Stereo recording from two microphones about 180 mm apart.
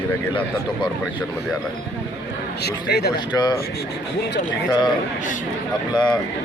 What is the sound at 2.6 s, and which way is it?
Speech, 65° left (ahead or behind).